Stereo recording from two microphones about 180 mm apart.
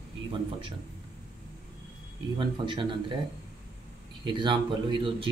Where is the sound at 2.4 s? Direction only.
25° right (ahead or behind).